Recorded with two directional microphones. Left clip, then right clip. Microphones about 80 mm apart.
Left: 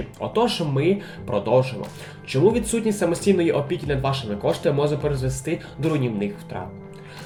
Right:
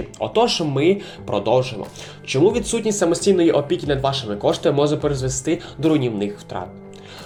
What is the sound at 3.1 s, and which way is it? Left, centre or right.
Speech, centre.